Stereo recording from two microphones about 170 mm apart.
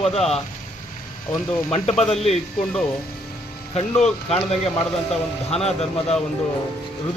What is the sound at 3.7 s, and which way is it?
A man's voice, 40° left (ahead or behind).